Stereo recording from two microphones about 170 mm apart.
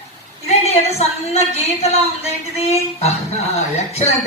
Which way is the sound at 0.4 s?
40° left (ahead or behind).